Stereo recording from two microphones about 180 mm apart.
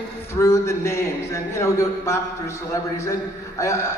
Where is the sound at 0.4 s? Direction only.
15° left (ahead or behind).